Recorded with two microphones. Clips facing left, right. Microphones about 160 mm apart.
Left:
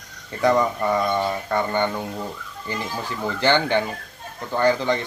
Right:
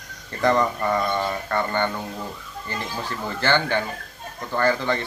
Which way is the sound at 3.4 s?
15° left (ahead or behind).